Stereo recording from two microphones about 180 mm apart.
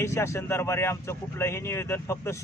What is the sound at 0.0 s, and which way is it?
Speech, 15° left (ahead or behind).